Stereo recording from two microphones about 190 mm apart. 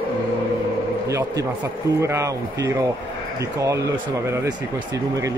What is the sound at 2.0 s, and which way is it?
Speech, 15° right (ahead or behind).